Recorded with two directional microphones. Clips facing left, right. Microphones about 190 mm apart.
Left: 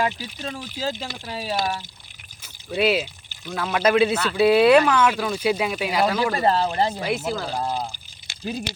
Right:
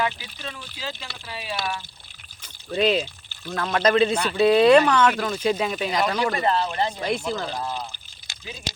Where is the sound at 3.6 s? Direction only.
10° left (ahead or behind).